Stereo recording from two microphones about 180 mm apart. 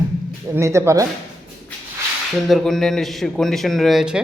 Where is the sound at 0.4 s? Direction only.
15° right (ahead or behind).